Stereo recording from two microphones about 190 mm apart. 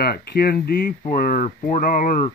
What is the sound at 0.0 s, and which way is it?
Speech, 55° left (ahead or behind).